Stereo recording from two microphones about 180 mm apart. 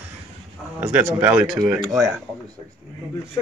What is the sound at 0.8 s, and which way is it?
Speech, 10° right (ahead or behind).